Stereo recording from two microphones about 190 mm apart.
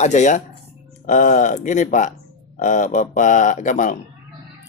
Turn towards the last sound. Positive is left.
turn(degrees=40)  # may be behind; listen again after turning